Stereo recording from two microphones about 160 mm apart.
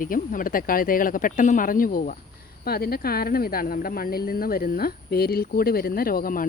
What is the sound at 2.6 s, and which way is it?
A woman's voice, 75° left (ahead or behind).